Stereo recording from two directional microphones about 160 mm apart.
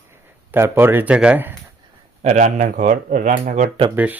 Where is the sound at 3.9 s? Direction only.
10° right (ahead or behind).